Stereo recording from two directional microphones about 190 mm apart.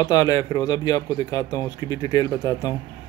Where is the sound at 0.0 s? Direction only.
20° left (ahead or behind).